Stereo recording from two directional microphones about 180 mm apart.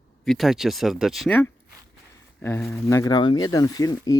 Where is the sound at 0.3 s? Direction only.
Centre (ahead or behind).